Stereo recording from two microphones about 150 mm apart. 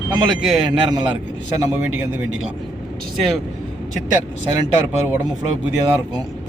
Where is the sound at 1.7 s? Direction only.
10° right (ahead or behind).